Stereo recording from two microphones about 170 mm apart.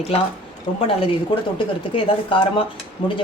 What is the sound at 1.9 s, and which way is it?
Speech, 30° left (ahead or behind).